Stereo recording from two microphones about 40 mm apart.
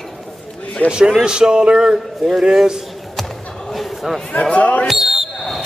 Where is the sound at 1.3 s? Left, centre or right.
Right.